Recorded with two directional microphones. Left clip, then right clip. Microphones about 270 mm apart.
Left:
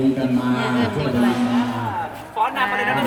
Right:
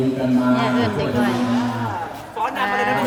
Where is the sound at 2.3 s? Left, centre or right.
Centre.